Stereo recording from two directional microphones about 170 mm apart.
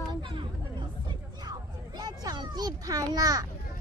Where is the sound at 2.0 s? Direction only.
25° right (ahead or behind).